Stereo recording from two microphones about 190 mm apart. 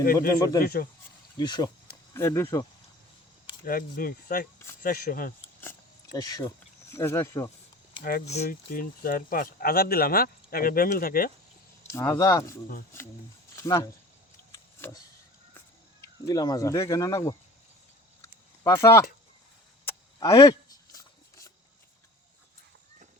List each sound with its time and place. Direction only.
0.3 s speech: 20° left (ahead or behind)
0.6 s speech: 50° left (ahead or behind)
1.4 s speech: 20° left (ahead or behind)
3.7 s speech: 50° left (ahead or behind)
6.1 s speech: 20° left (ahead or behind)
8.4 s speech: 50° left (ahead or behind)
11.9 s speech: 15° left (ahead or behind)
13.6 s speech: 15° left (ahead or behind)
14.5 s a sound: 15° left (ahead or behind)
16.2 s speech: 20° left (ahead or behind)
18.2 s a sound: 15° left (ahead or behind)